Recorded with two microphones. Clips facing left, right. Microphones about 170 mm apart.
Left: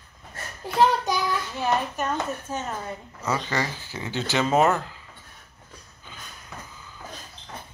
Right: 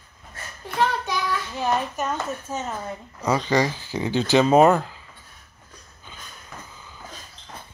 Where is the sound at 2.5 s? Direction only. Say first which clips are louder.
Right 1 dB; 15° left (ahead or behind).